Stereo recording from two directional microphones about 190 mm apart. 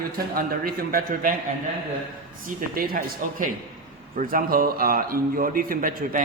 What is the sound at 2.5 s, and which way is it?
Speech, 50° right (ahead or behind).